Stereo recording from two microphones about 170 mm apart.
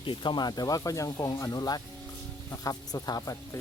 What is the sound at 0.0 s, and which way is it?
Speech, 30° left (ahead or behind).